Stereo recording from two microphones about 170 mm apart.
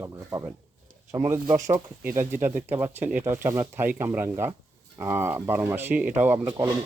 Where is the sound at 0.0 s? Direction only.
15° right (ahead or behind).